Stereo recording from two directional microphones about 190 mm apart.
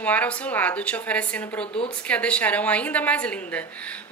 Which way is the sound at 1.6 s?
30° left (ahead or behind).